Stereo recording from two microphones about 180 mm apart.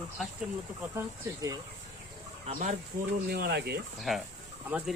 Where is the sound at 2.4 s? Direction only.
40° right (ahead or behind).